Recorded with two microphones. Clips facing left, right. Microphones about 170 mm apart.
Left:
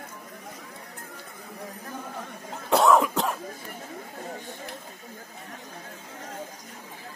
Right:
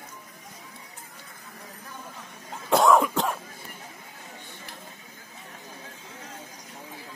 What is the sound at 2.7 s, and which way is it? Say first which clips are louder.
Cough: even; centre (ahead or behind).